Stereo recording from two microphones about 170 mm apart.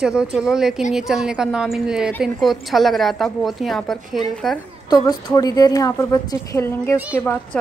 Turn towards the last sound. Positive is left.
turn(degrees=10)  # may be behind; listen again after turning